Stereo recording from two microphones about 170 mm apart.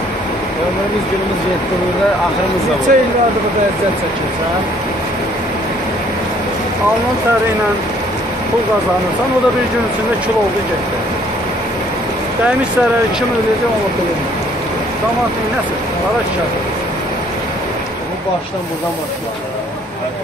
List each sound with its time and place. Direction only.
2.9 s speech: 55° right (ahead or behind)